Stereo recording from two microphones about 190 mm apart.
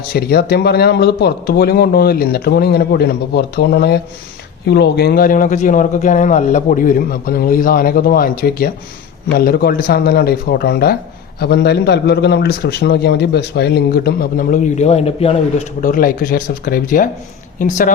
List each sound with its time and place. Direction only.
0.1 s a man's voice: 55° left (ahead or behind)